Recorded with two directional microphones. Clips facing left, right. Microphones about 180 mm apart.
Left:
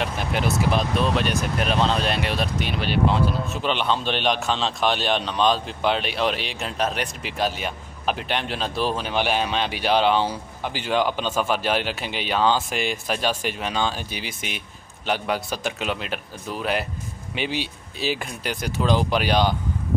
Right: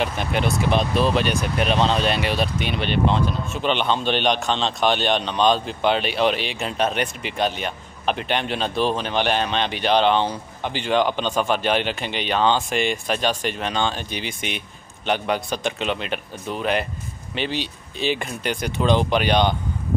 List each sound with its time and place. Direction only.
0.0 s speech: centre (ahead or behind)